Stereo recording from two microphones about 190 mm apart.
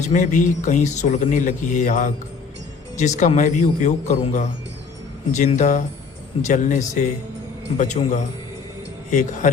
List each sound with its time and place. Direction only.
0.1 s a man's voice: 40° left (ahead or behind)